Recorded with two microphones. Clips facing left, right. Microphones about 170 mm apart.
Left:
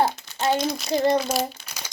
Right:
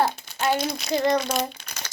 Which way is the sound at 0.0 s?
25° left (ahead or behind).